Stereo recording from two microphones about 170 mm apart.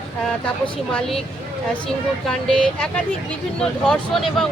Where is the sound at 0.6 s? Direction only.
5° left (ahead or behind).